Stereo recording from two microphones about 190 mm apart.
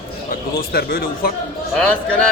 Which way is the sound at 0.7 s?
55° left (ahead or behind).